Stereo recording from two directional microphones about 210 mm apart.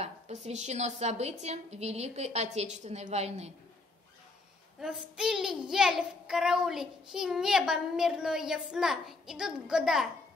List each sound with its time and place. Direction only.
0.0 s a woman's voice: 35° right (ahead or behind)
4.7 s a child's voice: 5° right (ahead or behind)